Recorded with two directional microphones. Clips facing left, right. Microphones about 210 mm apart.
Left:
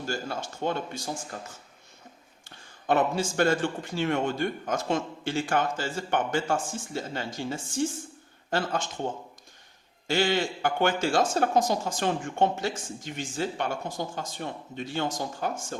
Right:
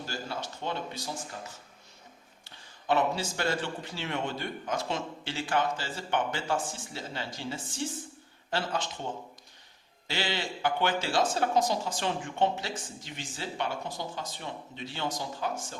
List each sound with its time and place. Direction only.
0.0 s speech: 50° left (ahead or behind)
2.8 s a man's voice: 50° left (ahead or behind)
10.1 s a man's voice: 50° left (ahead or behind)